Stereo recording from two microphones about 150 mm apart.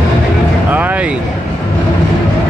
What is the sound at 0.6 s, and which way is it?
Vehicle, 10° right (ahead or behind).